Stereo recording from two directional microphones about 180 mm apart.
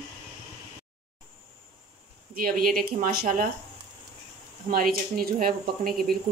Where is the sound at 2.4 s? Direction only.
50° right (ahead or behind).